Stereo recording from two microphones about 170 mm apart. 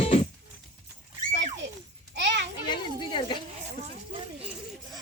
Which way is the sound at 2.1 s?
90° right.